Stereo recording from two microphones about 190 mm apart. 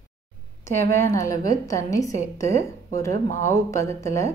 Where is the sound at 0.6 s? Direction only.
15° left (ahead or behind).